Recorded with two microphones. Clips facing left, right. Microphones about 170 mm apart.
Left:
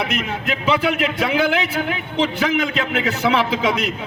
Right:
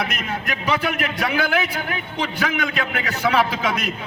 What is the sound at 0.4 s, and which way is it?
A man's voice, 25° left (ahead or behind).